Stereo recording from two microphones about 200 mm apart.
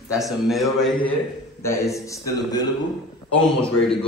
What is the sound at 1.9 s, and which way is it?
Speech, 15° left (ahead or behind).